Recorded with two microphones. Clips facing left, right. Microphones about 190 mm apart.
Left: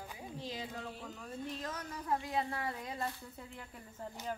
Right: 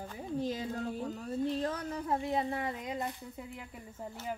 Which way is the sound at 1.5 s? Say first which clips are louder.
Right 8 dB; 30° right (ahead or behind).